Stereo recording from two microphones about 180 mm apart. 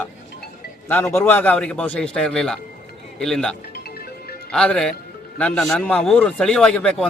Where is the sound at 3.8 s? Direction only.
60° left (ahead or behind).